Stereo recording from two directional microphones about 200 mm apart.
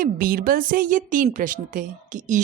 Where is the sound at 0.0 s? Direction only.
45° right (ahead or behind).